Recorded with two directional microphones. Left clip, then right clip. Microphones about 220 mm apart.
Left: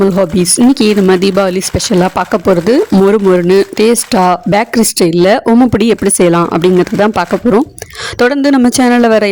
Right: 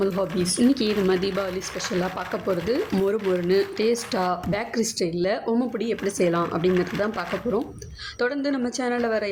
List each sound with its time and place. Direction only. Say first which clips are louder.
0.2 s speech: left 13 dB; 45° left (ahead or behind)